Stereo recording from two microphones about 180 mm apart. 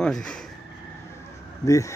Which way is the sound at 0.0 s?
5° left (ahead or behind).